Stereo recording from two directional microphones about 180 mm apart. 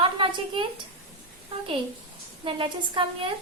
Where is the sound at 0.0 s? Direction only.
30° right (ahead or behind).